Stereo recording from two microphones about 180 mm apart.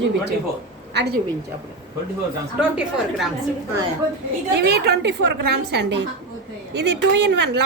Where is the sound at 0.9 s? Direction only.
70° right (ahead or behind).